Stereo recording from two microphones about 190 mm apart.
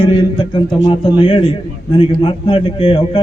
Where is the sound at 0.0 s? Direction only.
30° left (ahead or behind).